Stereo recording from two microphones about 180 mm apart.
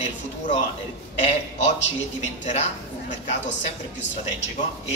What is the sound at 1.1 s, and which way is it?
Speech, 40° left (ahead or behind).